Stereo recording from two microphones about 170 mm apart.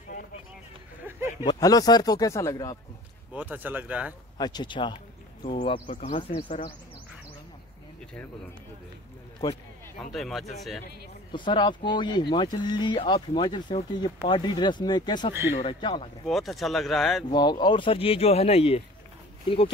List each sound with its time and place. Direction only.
1.4 s speech: 25° left (ahead or behind)
3.3 s speech: 10° right (ahead or behind)
4.4 s speech: 25° left (ahead or behind); by 6.7 s 45° left (ahead or behind)
9.4 s speech: 25° left (ahead or behind)
10.1 s speech: centre (ahead or behind)
11.3 s speech: 25° left (ahead or behind)
16.3 s speech: centre (ahead or behind)
17.3 s speech: 25° left (ahead or behind)